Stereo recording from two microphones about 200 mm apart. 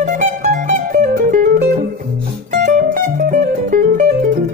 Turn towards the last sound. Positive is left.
turn(degrees=-40)  # may be behind; listen again after turning